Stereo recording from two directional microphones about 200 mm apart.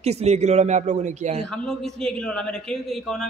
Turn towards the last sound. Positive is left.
turn(degrees=0)  # may be behind; listen again after turning